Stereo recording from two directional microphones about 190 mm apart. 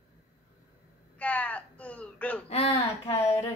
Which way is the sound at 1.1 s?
10° left (ahead or behind).